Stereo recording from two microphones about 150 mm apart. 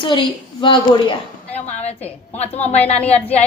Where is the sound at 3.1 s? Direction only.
45° left (ahead or behind).